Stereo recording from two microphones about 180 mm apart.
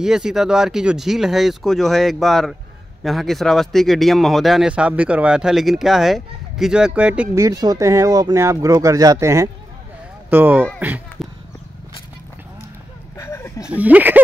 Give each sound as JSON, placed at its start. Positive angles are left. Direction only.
{"t": 0.0, "sound": "speech", "side_deg": -5}
{"t": 7.4, "sound": "speech", "side_deg": -20}
{"t": 13.2, "sound": "a sound", "side_deg": 15}
{"t": 13.7, "sound": "speech", "side_deg": -10}